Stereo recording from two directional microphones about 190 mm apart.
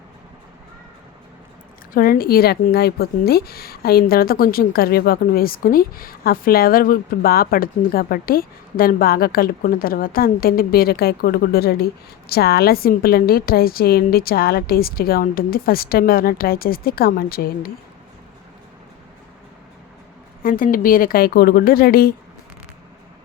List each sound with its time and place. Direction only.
1.9 s speech: 50° left (ahead or behind)
20.4 s speech: 45° left (ahead or behind)